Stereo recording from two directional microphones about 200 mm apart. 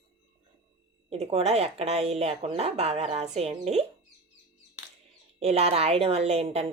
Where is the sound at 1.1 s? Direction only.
30° right (ahead or behind).